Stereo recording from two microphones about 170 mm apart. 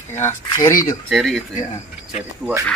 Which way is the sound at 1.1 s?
Centre (ahead or behind).